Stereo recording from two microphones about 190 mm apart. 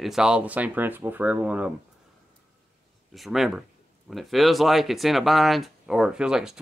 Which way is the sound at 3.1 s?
Centre (ahead or behind).